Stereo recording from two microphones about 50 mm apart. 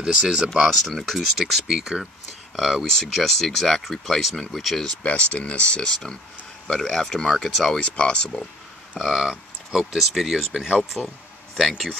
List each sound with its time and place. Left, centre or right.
0.0 s speech: centre
0.7 s speech: centre
1.5 s speech: centre
5.0 s speech: left
6.7 s speech: centre
7.8 s speech: left
8.9 s speech: centre